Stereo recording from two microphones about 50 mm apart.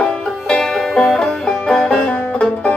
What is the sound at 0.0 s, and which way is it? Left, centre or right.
Music, centre.